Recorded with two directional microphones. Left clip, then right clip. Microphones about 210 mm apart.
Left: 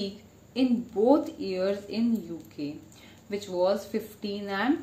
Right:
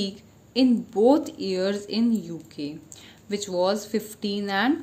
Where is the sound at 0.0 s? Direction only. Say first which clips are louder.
Right 4 dB; 45° right (ahead or behind).